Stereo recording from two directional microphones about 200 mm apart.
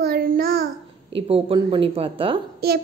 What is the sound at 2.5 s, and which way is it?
Speech, 50° right (ahead or behind).